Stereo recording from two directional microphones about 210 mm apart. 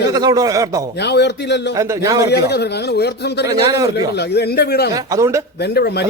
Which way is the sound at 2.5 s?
50° left (ahead or behind).